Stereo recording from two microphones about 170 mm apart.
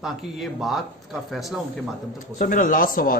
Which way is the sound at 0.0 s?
Centre (ahead or behind).